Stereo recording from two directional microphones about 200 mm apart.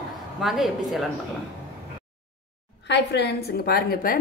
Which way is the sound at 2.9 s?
55° left (ahead or behind).